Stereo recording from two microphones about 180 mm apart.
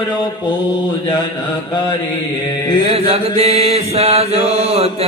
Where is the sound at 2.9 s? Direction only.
35° right (ahead or behind).